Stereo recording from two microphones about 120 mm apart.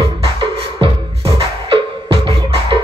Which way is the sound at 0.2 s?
50° right (ahead or behind).